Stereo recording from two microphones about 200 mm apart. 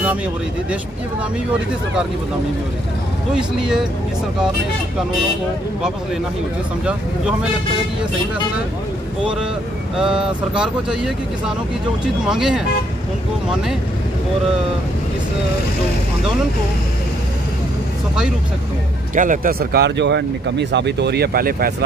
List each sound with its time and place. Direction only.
3.3 s speech: 5° right (ahead or behind)
9.9 s speech: 5° right (ahead or behind)
19.1 s speech: 40° right (ahead or behind)